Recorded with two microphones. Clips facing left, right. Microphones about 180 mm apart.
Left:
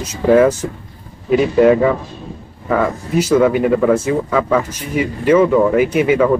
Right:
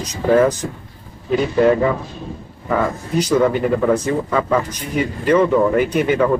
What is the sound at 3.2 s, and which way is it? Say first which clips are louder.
Speech: left 3 dB; 5° left (ahead or behind).